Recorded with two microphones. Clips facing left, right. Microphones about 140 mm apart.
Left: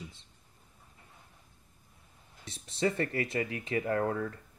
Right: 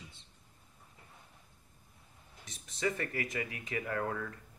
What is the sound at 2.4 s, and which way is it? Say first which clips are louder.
Speech: left 4 dB; 30° left (ahead or behind).